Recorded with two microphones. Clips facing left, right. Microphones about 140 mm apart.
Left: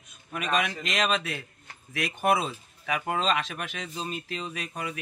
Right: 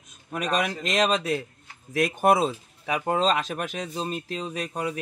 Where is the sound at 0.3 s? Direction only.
40° right (ahead or behind).